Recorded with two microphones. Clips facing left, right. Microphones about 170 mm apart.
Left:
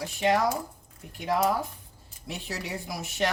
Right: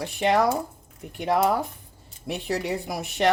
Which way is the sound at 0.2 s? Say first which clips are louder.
Right 3 dB; 60° right (ahead or behind).